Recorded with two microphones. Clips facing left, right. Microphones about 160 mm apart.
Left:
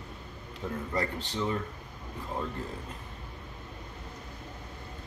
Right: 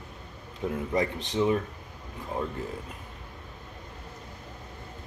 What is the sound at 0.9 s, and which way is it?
Speech, 20° right (ahead or behind).